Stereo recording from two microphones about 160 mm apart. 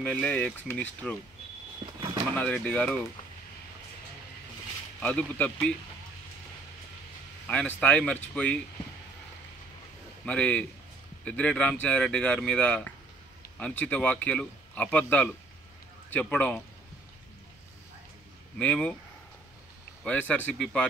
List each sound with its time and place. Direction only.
0.0 s a man's voice: 5° left (ahead or behind)
1.8 s a sound: 30° right (ahead or behind)
2.3 s a man's voice: 5° left (ahead or behind)
5.0 s a man's voice: 10° left (ahead or behind)
7.4 s a man's voice: 10° left (ahead or behind)
10.2 s a man's voice: 5° left (ahead or behind)
18.6 s a man's voice: 5° left (ahead or behind)
20.0 s a man's voice: 10° left (ahead or behind)